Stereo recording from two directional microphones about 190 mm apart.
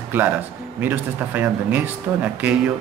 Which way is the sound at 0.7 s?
10° right (ahead or behind).